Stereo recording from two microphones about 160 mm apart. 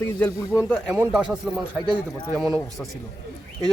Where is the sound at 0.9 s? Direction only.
5° right (ahead or behind).